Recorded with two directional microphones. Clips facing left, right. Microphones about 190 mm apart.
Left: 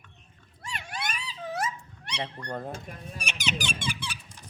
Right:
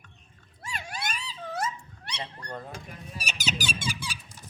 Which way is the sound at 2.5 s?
45° left (ahead or behind).